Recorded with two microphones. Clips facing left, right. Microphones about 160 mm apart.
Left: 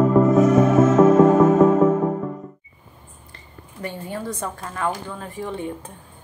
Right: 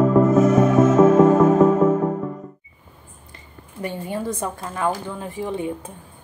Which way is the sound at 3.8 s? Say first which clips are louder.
Right 3 dB; 15° right (ahead or behind).